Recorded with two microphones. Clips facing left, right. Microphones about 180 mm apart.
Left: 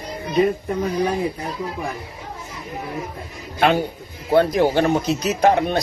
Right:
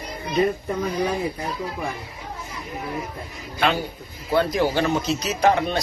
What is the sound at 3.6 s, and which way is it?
Speech, 55° left (ahead or behind).